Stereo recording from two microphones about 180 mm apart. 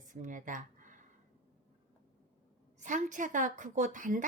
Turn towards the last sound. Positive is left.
turn(degrees=-45)  # may be behind; listen again after turning